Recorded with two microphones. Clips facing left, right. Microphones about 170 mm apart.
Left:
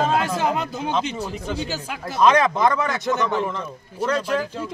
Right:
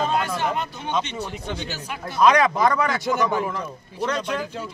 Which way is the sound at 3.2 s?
10° right (ahead or behind).